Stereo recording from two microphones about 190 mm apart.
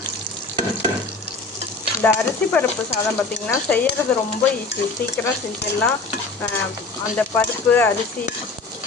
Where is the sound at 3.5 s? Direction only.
5° left (ahead or behind).